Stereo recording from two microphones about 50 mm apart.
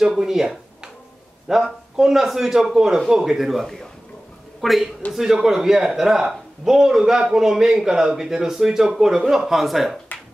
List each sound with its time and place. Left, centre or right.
0.1 s speech: centre
1.7 s a woman's voice: centre